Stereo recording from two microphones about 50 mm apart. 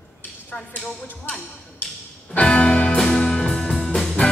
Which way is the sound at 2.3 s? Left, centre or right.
Left.